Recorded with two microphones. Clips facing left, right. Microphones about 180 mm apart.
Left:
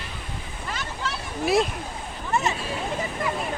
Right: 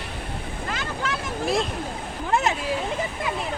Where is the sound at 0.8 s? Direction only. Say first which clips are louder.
Right 3 dB; 90° right.